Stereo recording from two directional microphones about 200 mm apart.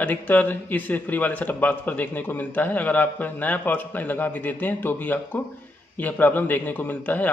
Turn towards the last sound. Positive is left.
turn(degrees=10)  # may be behind; listen again after turning